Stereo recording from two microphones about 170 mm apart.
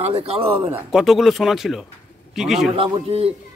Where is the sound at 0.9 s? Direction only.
Centre (ahead or behind).